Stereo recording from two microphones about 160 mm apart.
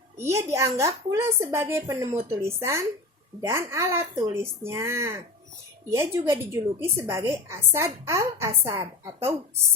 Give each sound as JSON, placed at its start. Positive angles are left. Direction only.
{"t": 0.2, "sound": "a woman's voice", "side_deg": -15}